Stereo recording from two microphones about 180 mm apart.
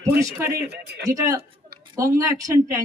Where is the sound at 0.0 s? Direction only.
15° right (ahead or behind).